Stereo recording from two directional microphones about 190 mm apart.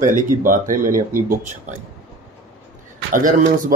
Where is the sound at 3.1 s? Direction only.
45° right (ahead or behind).